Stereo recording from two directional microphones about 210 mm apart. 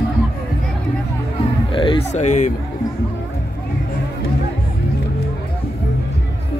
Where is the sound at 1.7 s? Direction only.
25° left (ahead or behind).